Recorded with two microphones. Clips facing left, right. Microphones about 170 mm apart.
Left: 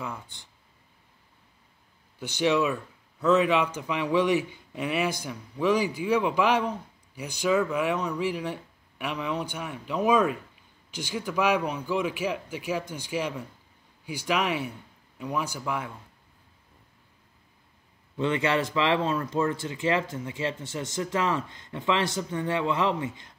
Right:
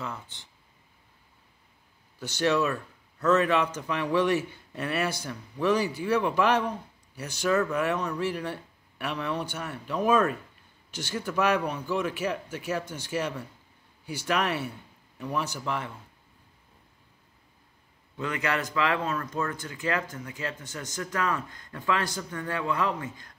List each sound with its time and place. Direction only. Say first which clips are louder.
0.0 s a sound: left 1 dB; 15° left (ahead or behind)
2.1 s a man's voice: left 1 dB; 15° left (ahead or behind)
18.1 s speech: left 5 dB; 25° left (ahead or behind)